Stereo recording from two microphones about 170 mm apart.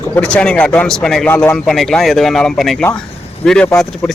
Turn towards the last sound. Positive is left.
turn(degrees=5)  # may be behind; listen again after turning